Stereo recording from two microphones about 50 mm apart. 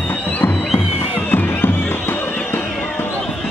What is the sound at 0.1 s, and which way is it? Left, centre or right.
Fireworks, left.